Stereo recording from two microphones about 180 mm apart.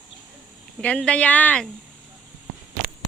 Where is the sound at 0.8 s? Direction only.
5° left (ahead or behind).